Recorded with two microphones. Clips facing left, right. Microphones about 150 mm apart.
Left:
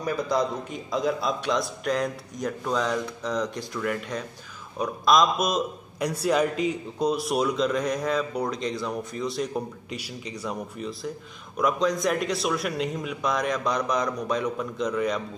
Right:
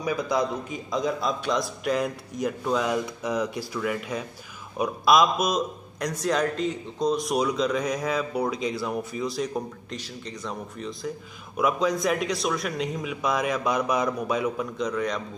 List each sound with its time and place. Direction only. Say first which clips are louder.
0.0 s a man's voice: even; 5° right (ahead or behind)